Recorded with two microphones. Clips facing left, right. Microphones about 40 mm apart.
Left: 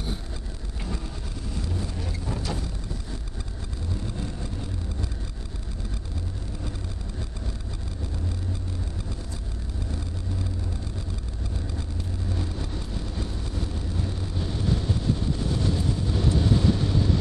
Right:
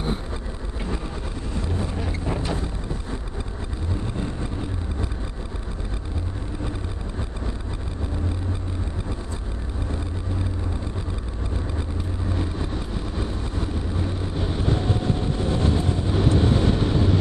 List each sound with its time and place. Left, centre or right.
1.6 s vehicle: right
12.3 s vehicle: right